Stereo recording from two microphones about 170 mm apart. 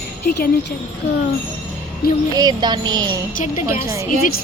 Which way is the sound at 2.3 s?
25° right (ahead or behind).